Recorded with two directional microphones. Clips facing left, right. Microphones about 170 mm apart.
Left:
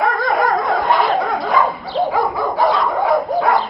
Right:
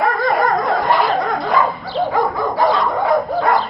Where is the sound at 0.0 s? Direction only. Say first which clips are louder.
Even; centre (ahead or behind).